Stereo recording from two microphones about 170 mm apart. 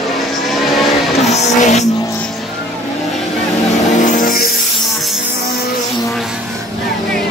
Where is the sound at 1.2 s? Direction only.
40° left (ahead or behind).